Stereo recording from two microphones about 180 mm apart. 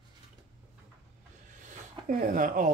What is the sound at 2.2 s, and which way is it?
Music, 45° right (ahead or behind).